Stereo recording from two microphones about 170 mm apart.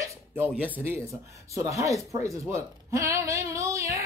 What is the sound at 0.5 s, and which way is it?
Speech, 10° right (ahead or behind).